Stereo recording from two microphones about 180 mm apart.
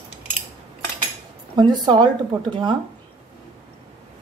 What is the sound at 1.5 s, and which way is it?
Speech, 25° right (ahead or behind).